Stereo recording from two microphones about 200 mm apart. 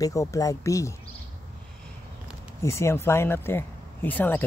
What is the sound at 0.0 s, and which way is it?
Speech, 15° left (ahead or behind).